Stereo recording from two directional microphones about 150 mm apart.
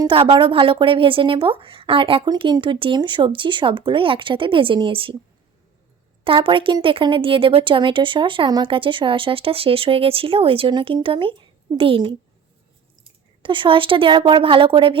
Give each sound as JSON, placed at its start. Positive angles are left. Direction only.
{"t": 0.0, "sound": "speech", "side_deg": -35}
{"t": 6.2, "sound": "speech", "side_deg": -35}